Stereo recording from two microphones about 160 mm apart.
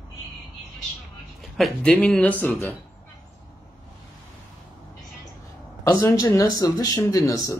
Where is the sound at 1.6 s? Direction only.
5° left (ahead or behind).